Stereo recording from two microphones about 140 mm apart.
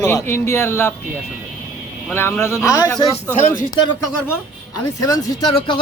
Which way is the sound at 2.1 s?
15° left (ahead or behind).